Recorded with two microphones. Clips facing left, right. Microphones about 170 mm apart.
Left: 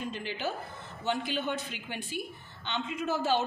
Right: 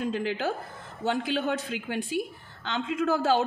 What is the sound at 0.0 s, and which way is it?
A woman's voice, 90° right.